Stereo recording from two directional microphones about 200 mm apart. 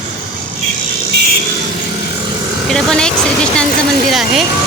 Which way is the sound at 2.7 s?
5° left (ahead or behind).